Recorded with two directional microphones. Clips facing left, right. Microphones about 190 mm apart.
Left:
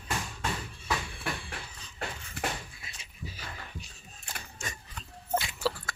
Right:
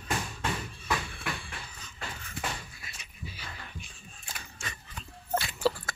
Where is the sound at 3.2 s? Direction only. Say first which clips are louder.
Left 1 dB; 40° left (ahead or behind).